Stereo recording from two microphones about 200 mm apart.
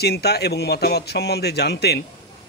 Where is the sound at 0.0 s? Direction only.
55° left (ahead or behind).